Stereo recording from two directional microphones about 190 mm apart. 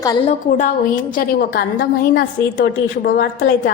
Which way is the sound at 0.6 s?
45° left (ahead or behind).